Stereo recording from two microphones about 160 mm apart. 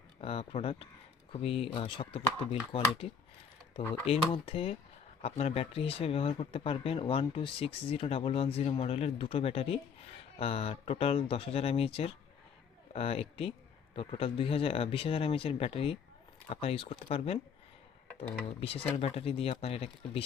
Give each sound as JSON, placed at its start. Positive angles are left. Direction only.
{"t": 0.2, "sound": "speech", "side_deg": 35}
{"t": 4.0, "sound": "speech", "side_deg": 35}
{"t": 18.4, "sound": "speech", "side_deg": 35}